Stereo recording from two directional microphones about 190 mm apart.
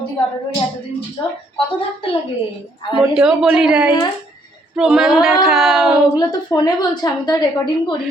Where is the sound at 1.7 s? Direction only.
30° left (ahead or behind).